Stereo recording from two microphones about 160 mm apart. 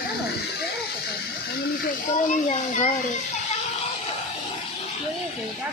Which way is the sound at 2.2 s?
50° left (ahead or behind).